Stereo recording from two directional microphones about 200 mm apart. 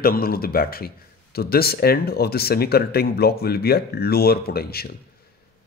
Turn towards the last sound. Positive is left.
turn(degrees=50)  # may be behind; listen again after turning